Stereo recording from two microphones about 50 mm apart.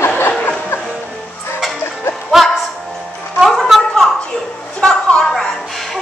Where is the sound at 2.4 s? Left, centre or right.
Centre.